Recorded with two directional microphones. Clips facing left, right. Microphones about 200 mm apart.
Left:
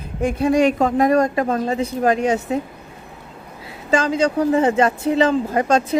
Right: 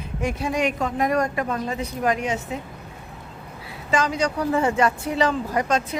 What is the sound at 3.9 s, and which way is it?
Speech, 25° left (ahead or behind).